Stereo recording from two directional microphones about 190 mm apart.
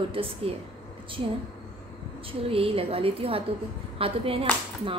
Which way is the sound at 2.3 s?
30° right (ahead or behind).